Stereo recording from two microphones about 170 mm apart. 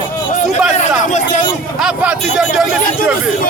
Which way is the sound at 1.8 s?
5° right (ahead or behind).